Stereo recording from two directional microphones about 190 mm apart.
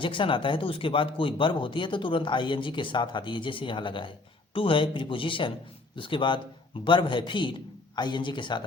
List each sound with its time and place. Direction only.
0.0 s speech: 25° left (ahead or behind)